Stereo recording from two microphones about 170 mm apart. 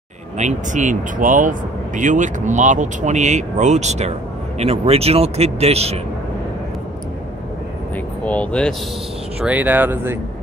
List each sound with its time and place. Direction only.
0.4 s speech: 45° right (ahead or behind)
8.3 s speech: 5° left (ahead or behind)
9.4 s speech: 10° right (ahead or behind)